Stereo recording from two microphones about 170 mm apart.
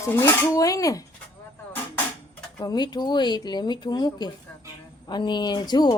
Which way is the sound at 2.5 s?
25° left (ahead or behind).